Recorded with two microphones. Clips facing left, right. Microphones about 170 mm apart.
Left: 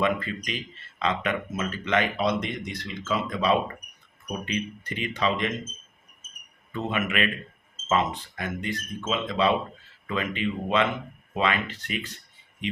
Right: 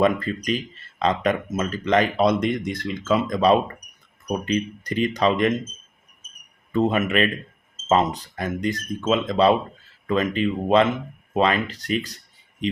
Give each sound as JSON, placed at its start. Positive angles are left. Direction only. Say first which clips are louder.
{"t": 0.0, "sound": "speech", "louder": "right 6 dB", "side_deg": -40}
{"t": 6.7, "sound": "speech", "louder": "right 7 dB", "side_deg": -40}